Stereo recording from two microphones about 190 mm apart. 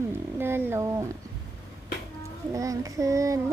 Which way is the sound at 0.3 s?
10° right (ahead or behind).